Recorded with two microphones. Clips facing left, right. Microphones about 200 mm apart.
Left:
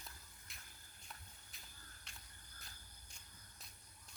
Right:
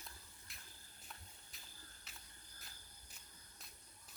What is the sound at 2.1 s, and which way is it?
Cricket, 5° right (ahead or behind).